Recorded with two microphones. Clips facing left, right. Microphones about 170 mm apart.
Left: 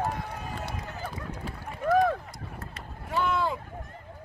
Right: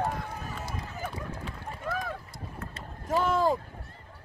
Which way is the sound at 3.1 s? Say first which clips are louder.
Right 3 dB; 40° right (ahead or behind).